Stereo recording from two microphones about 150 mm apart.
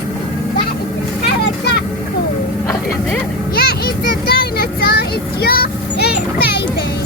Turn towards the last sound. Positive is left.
turn(degrees=90)